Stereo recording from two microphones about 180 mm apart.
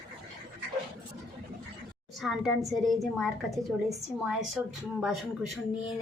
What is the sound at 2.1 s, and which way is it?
A woman's voice, centre (ahead or behind).